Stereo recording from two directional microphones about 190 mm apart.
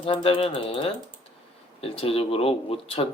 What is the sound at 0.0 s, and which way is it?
Speech, 25° left (ahead or behind).